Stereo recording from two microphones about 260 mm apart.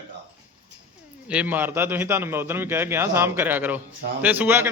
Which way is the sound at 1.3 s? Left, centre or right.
Centre.